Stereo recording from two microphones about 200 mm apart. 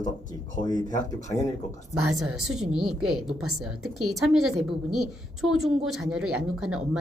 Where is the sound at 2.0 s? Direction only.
Centre (ahead or behind).